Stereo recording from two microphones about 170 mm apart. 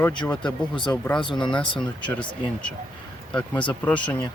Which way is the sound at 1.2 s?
25° left (ahead or behind).